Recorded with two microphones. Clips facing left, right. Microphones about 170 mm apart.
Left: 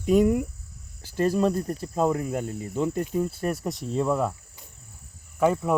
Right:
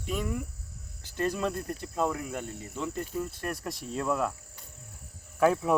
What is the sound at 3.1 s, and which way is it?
Speech, 10° left (ahead or behind).